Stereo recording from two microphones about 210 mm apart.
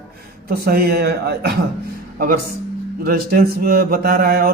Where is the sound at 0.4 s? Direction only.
45° right (ahead or behind).